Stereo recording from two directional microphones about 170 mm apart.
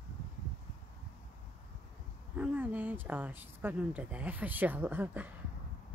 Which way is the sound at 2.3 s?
10° right (ahead or behind).